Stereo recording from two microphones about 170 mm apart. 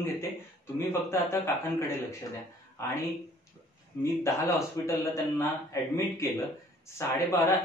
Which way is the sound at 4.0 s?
15° left (ahead or behind).